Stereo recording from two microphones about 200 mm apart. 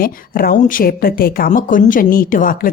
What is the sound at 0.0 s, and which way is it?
A woman's voice, 45° left (ahead or behind).